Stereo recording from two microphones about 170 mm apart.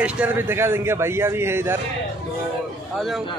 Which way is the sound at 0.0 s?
10° right (ahead or behind).